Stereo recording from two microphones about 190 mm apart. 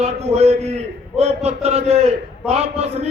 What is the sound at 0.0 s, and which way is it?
A man's voice, 35° right (ahead or behind).